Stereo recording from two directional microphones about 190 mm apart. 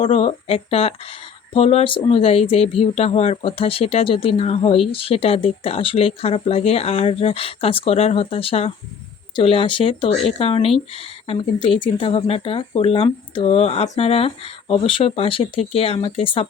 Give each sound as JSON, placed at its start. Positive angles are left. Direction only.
{"t": 0.0, "sound": "speech", "side_deg": 30}